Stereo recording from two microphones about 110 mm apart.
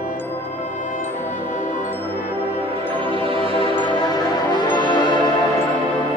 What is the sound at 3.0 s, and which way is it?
Music, 55° right (ahead or behind).